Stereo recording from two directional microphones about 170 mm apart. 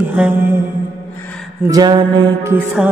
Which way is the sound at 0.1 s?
10° right (ahead or behind).